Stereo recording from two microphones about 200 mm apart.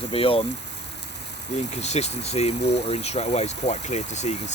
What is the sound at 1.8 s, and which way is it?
Speech, 35° left (ahead or behind).